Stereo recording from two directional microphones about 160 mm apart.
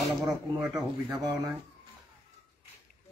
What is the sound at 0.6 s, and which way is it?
Speech, 5° right (ahead or behind).